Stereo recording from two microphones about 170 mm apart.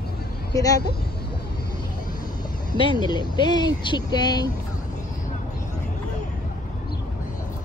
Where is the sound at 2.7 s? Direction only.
25° left (ahead or behind).